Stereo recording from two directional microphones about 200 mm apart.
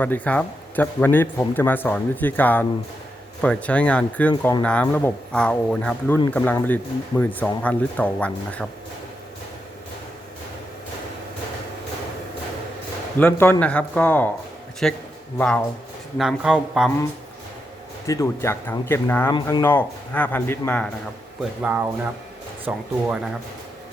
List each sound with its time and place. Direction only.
0.0 s a man's voice: 10° left (ahead or behind)
13.1 s a man's voice: 10° left (ahead or behind)
18.0 s a man's voice: 15° left (ahead or behind)
19.6 s a man's voice: 10° left (ahead or behind)
21.6 s speech: 10° right (ahead or behind)